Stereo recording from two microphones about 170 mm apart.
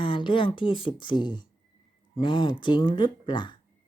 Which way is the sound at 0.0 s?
30° left (ahead or behind).